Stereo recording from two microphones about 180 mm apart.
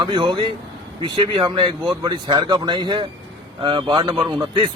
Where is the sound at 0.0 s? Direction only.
25° right (ahead or behind).